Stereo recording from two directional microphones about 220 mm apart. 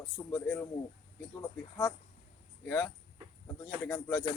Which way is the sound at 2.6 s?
5° left (ahead or behind).